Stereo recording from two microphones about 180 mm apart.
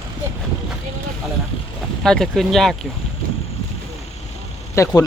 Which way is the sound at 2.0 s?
Centre (ahead or behind).